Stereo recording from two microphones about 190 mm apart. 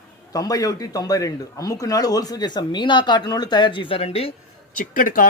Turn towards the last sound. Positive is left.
turn(degrees=45)  # may be behind; listen again after turning